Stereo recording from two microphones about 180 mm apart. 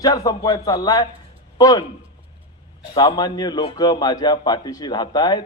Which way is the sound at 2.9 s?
25° left (ahead or behind).